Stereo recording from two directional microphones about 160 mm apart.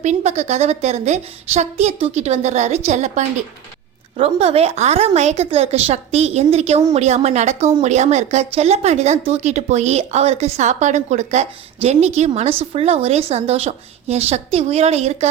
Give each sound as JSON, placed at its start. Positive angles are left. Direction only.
{"t": 0.0, "sound": "speech", "side_deg": -45}